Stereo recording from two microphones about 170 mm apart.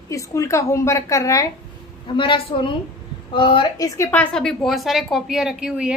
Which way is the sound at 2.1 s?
30° left (ahead or behind).